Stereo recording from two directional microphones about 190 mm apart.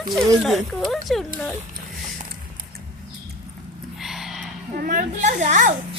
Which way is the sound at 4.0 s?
Centre (ahead or behind).